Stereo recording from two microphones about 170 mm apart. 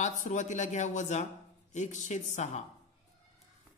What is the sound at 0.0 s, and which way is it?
A man's voice, 45° left (ahead or behind).